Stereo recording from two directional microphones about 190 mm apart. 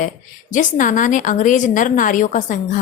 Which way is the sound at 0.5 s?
45° left (ahead or behind).